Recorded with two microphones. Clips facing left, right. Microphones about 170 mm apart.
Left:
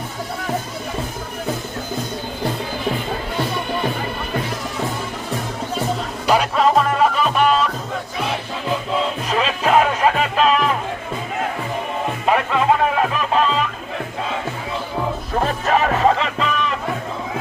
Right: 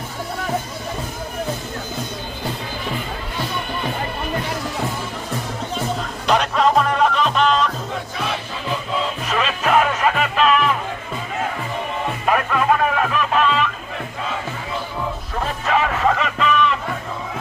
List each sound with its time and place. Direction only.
6.2 s music: 5° left (ahead or behind)
9.3 s music: 35° left (ahead or behind)
12.2 s music: 20° left (ahead or behind)
15.4 s music: 40° left (ahead or behind)